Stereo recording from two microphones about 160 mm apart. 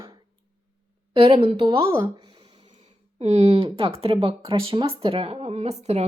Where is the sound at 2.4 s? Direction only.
40° right (ahead or behind).